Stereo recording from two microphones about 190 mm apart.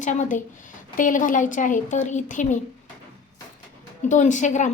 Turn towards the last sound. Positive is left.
turn(degrees=40)  # may be behind; listen again after turning